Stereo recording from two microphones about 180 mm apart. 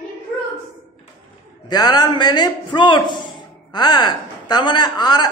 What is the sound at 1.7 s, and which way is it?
A woman's voice, 20° left (ahead or behind).